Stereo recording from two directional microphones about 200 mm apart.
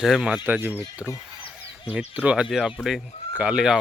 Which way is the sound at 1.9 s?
5° right (ahead or behind).